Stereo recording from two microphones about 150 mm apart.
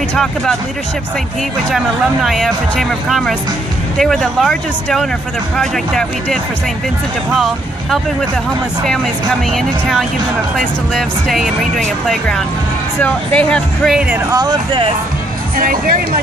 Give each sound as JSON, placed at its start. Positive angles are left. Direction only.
{"t": 0.1, "sound": "speech", "side_deg": 5}
{"t": 1.7, "sound": "speech", "side_deg": 0}
{"t": 9.5, "sound": "speech", "side_deg": 0}
{"t": 13.9, "sound": "speech", "side_deg": -10}
{"t": 14.4, "sound": "speech", "side_deg": -35}
{"t": 15.5, "sound": "speech", "side_deg": -70}